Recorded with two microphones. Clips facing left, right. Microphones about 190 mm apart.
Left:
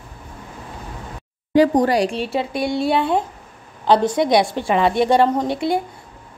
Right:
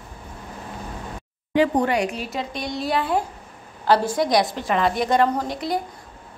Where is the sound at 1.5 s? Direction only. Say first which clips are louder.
Left 5 dB; 40° left (ahead or behind).